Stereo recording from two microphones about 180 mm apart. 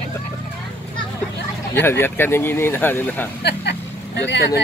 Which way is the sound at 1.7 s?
10° left (ahead or behind).